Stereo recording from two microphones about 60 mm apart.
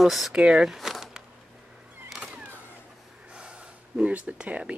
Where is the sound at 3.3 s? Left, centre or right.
Centre.